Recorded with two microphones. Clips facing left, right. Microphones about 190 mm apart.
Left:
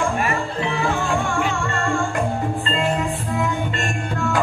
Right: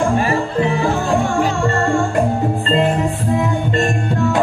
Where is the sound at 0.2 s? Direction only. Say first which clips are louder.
Right 6 dB; 35° right (ahead or behind).